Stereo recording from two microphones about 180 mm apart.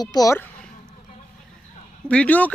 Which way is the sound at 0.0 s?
20° left (ahead or behind).